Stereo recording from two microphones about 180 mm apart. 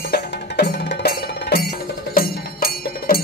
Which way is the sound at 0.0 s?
65° left (ahead or behind).